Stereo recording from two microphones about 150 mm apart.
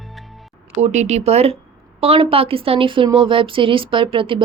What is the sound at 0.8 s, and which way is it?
Speech, 50° right (ahead or behind).